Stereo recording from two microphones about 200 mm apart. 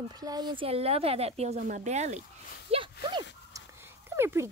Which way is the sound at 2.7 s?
25° right (ahead or behind).